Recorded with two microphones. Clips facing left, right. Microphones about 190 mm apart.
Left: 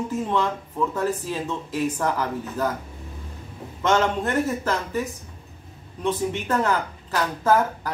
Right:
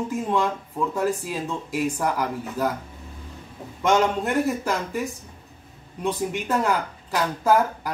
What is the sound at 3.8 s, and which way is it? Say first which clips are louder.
Speech: right 1 dB; 10° right (ahead or behind).